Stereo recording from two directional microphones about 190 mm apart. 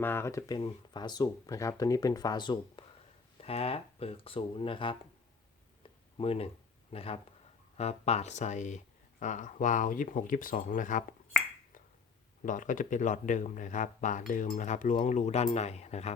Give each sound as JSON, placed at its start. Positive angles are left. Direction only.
{"t": 0.0, "sound": "speech", "side_deg": 10}
{"t": 5.8, "sound": "a sound", "side_deg": 30}
{"t": 6.9, "sound": "speech", "side_deg": 30}
{"t": 12.4, "sound": "speech", "side_deg": 45}